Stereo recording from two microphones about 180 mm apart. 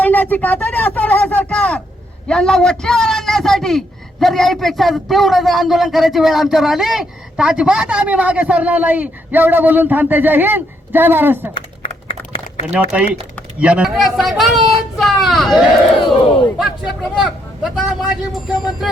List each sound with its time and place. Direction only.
0.0 s a sound: 10° left (ahead or behind)
2.2 s a man's voice: 5° left (ahead or behind); by 11.5 s 10° right (ahead or behind)
11.5 s typing: 30° left (ahead or behind)
12.7 s a man's voice: 5° right (ahead or behind)